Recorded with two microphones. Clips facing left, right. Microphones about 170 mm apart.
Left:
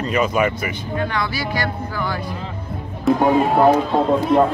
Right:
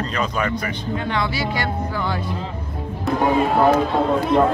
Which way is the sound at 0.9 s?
25° right (ahead or behind).